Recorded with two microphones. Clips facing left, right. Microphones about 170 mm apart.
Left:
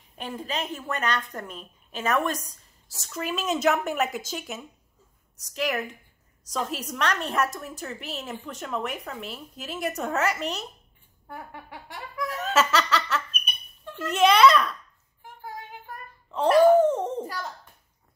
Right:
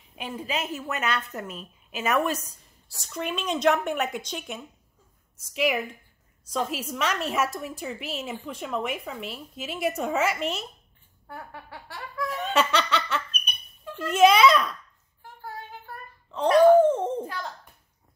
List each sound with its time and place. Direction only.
0.1 s a woman's voice: 10° right (ahead or behind)
11.2 s a sound: 15° left (ahead or behind)
12.2 s laughter: centre (ahead or behind)
13.9 s a woman's voice: centre (ahead or behind)
16.3 s a woman's voice: 5° left (ahead or behind)